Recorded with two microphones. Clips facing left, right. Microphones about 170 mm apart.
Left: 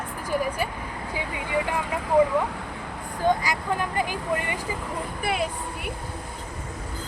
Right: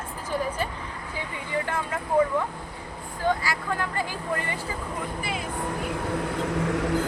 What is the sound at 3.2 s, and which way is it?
Speech, 20° left (ahead or behind).